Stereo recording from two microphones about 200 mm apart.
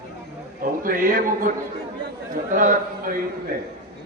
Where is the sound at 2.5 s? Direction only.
45° right (ahead or behind).